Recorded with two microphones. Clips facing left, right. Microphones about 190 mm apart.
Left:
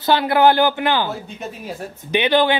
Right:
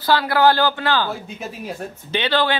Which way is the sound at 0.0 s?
20° left (ahead or behind).